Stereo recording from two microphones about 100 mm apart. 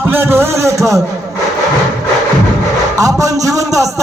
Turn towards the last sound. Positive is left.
turn(degrees=-35)  # may be behind; listen again after turning